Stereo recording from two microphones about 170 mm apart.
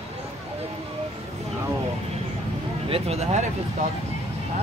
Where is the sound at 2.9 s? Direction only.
35° right (ahead or behind).